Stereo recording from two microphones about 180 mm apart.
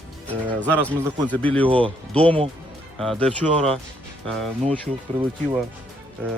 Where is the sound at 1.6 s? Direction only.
30° right (ahead or behind).